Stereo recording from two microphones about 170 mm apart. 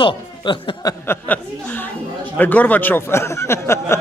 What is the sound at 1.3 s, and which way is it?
A man's voice, 10° left (ahead or behind).